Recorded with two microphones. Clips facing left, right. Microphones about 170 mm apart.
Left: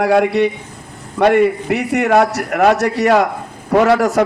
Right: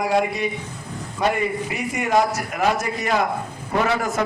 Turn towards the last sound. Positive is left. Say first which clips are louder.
# left 9 dB
turn(degrees=75)  # may be behind; listen again after turning